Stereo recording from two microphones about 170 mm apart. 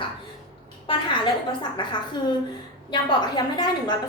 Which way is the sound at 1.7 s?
25° left (ahead or behind).